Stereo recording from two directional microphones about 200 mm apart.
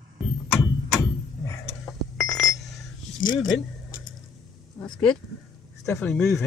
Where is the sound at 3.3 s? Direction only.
75° left (ahead or behind).